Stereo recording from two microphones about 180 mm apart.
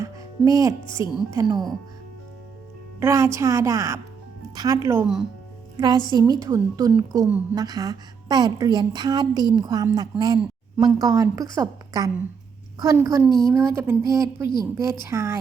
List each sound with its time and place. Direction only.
0.0 s speech: 20° right (ahead or behind)
3.0 s a woman's voice: 15° right (ahead or behind)